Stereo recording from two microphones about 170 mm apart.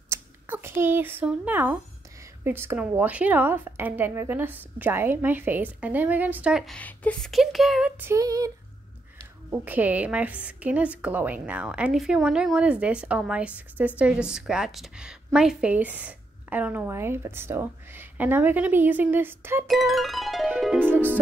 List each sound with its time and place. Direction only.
0.1 s a woman's voice: 15° right (ahead or behind)
8.0 s a sound: 20° right (ahead or behind)
9.5 s a woman's voice: 10° right (ahead or behind)
19.7 s speech: centre (ahead or behind)